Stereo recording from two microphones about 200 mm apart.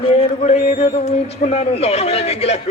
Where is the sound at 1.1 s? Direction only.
35° left (ahead or behind).